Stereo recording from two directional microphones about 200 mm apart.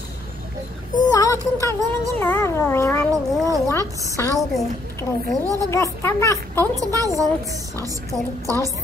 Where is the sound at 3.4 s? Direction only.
15° right (ahead or behind).